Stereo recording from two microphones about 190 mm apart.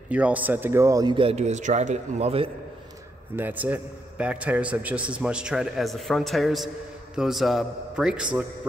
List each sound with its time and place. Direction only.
0.1 s a man's voice: 10° right (ahead or behind); by 2.5 s 30° right (ahead or behind)
3.3 s a man's voice: 10° right (ahead or behind)